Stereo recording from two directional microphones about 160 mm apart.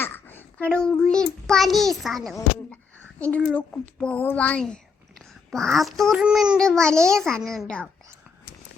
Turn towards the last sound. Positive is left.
turn(degrees=5)  # may be behind; listen again after turning